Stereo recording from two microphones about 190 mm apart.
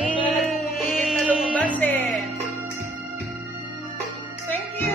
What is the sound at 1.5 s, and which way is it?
Music, 10° left (ahead or behind).